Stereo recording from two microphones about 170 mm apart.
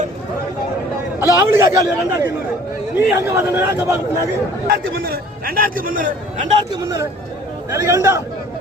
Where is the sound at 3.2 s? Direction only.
15° right (ahead or behind).